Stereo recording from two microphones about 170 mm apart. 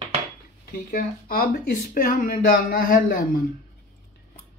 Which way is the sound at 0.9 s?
55° left (ahead or behind).